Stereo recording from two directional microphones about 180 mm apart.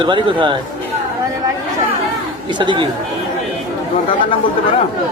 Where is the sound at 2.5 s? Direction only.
25° right (ahead or behind).